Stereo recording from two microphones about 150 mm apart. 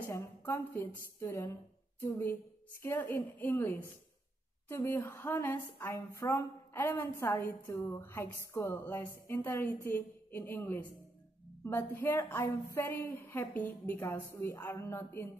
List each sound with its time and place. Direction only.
0.1 s a woman's voice: 20° left (ahead or behind)